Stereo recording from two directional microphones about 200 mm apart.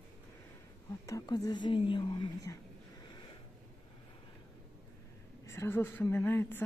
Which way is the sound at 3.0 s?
20° left (ahead or behind).